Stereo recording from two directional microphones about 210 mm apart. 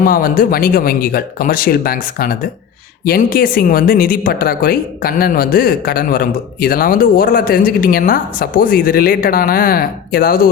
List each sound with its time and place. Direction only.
0.0 s speech: 40° left (ahead or behind)